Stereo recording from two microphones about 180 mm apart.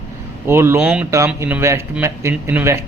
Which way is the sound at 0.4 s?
15° right (ahead or behind).